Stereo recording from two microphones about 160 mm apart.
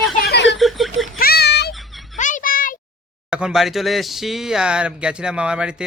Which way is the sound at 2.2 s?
50° left (ahead or behind).